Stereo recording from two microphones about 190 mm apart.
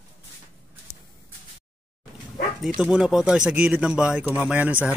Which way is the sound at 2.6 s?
Centre (ahead or behind).